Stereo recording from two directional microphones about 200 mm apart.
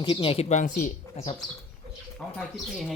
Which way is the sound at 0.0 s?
25° left (ahead or behind).